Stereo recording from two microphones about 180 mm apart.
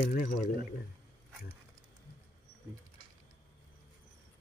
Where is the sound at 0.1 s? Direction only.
50° left (ahead or behind).